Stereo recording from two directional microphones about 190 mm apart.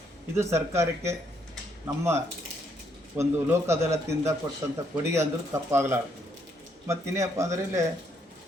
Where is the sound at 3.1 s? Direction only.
15° right (ahead or behind).